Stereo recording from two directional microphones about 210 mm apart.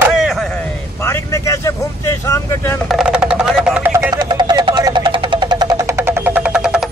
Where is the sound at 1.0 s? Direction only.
15° left (ahead or behind).